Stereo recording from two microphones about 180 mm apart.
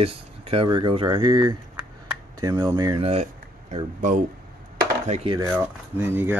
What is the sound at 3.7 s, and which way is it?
Speech, 45° right (ahead or behind).